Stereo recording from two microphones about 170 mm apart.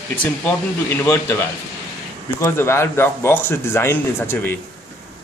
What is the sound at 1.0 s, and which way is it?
Speech, 15° left (ahead or behind).